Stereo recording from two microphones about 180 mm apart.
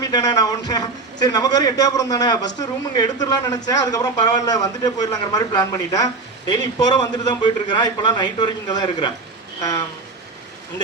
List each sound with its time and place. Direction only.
0.0 s a man's voice: 20° left (ahead or behind)